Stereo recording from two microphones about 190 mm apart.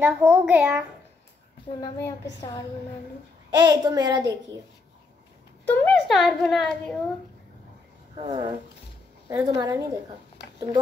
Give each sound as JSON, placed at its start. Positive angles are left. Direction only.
{"t": 0.0, "sound": "a woman's voice", "side_deg": -5}
{"t": 3.4, "sound": "a child's voice", "side_deg": -20}
{"t": 5.7, "sound": "a woman's voice", "side_deg": 5}
{"t": 8.2, "sound": "a child's voice", "side_deg": -25}